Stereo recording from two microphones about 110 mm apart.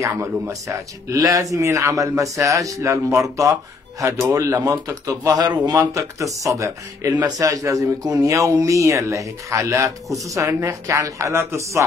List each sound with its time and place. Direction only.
0.0 s speech: 25° right (ahead or behind)